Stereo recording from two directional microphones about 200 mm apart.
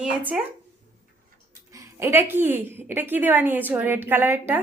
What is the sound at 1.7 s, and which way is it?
A woman's voice, 15° right (ahead or behind).